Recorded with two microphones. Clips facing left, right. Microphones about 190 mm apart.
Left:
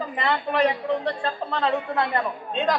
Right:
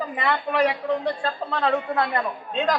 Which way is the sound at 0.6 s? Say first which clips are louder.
Even; 20° left (ahead or behind).